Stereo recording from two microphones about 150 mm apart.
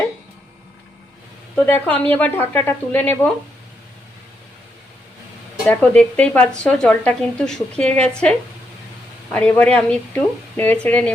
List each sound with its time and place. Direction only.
1.6 s speech: 10° left (ahead or behind)
5.6 s speech: 10° left (ahead or behind)